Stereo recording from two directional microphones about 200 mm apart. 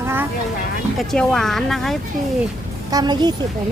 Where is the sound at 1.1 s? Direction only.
5° left (ahead or behind).